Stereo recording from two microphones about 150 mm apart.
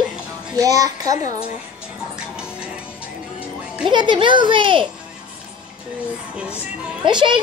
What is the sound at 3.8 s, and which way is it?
A child's voice, 30° right (ahead or behind).